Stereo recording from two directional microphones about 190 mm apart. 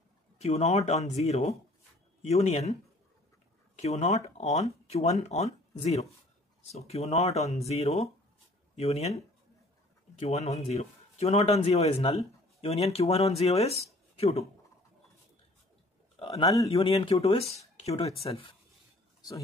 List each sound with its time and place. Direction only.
0.4 s speech: 35° left (ahead or behind)
3.8 s speech: 35° left (ahead or behind)
16.2 s speech: 30° left (ahead or behind)